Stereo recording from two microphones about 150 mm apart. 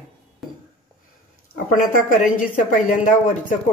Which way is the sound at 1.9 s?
60° left (ahead or behind).